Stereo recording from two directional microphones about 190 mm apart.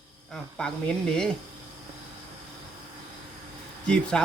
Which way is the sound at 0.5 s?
5° left (ahead or behind).